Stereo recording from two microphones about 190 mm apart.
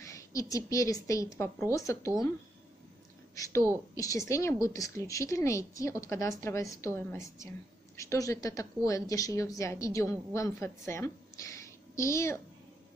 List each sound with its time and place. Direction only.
0.0 s a woman's voice: 15° left (ahead or behind)
3.3 s a woman's voice: 15° left (ahead or behind)